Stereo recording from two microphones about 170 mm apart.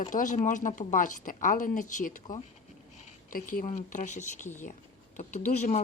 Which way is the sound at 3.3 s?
55° left (ahead or behind).